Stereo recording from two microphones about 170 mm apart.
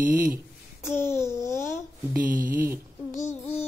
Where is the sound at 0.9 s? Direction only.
15° left (ahead or behind).